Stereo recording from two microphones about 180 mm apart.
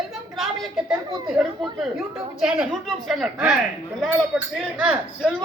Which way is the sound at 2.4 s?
Centre (ahead or behind).